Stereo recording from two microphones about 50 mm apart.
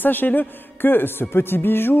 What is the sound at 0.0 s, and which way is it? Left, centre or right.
Speech, left.